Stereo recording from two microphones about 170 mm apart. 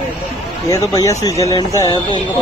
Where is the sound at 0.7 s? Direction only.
20° left (ahead or behind).